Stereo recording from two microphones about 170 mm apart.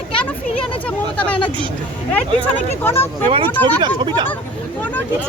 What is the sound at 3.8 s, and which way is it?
Speech, 25° right (ahead or behind).